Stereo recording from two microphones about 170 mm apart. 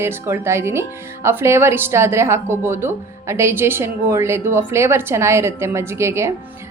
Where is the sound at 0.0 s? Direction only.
15° right (ahead or behind).